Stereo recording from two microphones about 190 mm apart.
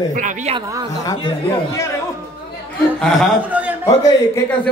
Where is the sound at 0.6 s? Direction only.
20° right (ahead or behind).